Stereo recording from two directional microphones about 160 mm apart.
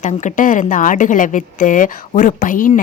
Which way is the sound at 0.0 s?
50° left (ahead or behind).